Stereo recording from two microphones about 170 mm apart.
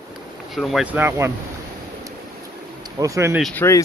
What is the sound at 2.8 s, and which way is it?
Speech, 20° right (ahead or behind).